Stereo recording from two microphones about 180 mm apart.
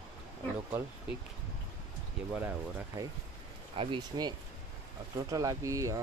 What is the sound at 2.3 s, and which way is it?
Speech, 15° right (ahead or behind).